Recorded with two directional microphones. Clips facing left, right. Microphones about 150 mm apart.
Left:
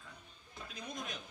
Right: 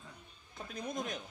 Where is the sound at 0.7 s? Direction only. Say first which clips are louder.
Right 6 dB; 50° right (ahead or behind).